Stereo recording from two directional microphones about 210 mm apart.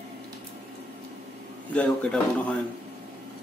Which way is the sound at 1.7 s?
5° left (ahead or behind).